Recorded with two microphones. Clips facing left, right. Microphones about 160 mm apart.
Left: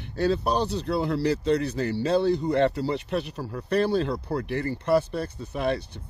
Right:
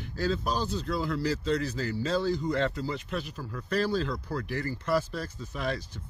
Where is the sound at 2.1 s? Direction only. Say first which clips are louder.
Left 6 dB; 65° left (ahead or behind).